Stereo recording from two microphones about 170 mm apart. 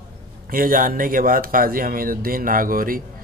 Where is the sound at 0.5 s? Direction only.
55° right (ahead or behind).